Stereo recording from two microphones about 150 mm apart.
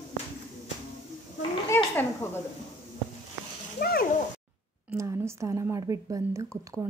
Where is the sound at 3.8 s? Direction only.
90° left.